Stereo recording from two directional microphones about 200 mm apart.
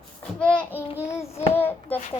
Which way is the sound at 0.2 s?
5° left (ahead or behind).